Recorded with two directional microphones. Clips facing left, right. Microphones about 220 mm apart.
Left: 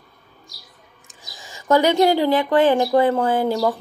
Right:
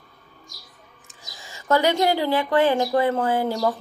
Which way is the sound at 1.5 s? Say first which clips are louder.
Left 3 dB; 15° left (ahead or behind).